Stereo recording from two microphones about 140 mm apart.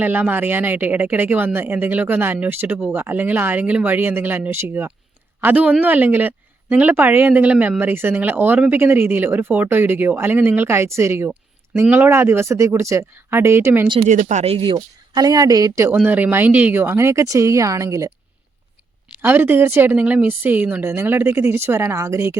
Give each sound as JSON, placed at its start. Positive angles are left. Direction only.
{"t": 0.0, "sound": "a woman's voice", "side_deg": -15}
{"t": 14.0, "sound": "speech", "side_deg": -65}
{"t": 14.5, "sound": "speech", "side_deg": -35}
{"t": 19.2, "sound": "a woman's voice", "side_deg": -15}